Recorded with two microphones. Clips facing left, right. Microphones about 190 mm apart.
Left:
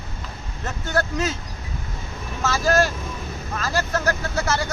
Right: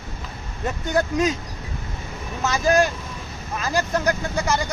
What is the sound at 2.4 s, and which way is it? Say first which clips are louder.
Speech: right 1 dB; 15° right (ahead or behind).